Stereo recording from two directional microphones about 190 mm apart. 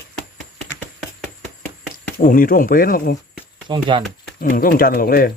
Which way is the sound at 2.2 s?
45° left (ahead or behind).